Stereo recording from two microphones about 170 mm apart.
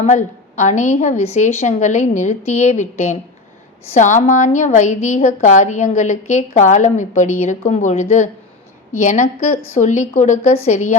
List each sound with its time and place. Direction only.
0.0 s a woman's voice: 45° left (ahead or behind)